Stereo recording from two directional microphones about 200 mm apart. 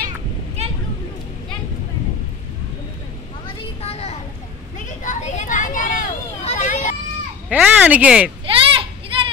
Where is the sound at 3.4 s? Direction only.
30° left (ahead or behind).